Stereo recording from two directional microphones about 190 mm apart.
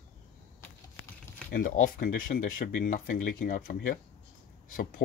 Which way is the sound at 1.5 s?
50° left (ahead or behind).